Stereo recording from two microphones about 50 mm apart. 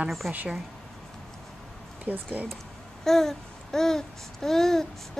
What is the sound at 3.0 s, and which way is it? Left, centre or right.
Babbling, centre.